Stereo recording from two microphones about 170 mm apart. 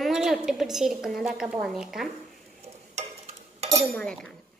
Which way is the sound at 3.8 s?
5° left (ahead or behind).